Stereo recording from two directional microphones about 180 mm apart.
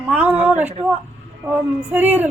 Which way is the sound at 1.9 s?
10° right (ahead or behind).